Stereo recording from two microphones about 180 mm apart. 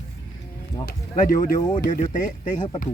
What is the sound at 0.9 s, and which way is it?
Speech, 50° left (ahead or behind).